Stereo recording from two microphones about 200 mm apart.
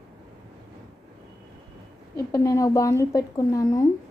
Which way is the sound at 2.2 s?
15° left (ahead or behind).